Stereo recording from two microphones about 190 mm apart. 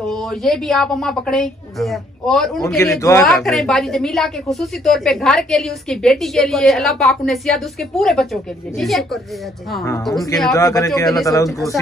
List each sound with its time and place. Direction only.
0.0 s a woman's voice: centre (ahead or behind)
2.6 s speech: 15° left (ahead or behind)
3.4 s a woman's voice: centre (ahead or behind)
10.6 s speech: 15° left (ahead or behind)